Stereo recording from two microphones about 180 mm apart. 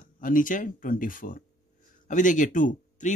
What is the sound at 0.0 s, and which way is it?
Speech, 50° left (ahead or behind).